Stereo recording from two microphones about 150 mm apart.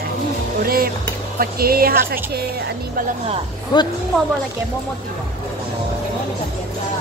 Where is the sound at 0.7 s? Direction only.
80° right.